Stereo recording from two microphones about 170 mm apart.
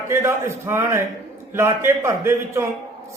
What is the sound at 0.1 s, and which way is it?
Speech, 15° right (ahead or behind).